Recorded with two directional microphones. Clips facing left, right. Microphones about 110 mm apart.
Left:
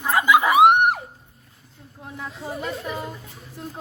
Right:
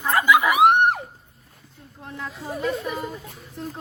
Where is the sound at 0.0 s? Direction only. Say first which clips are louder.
Even; 15° left (ahead or behind).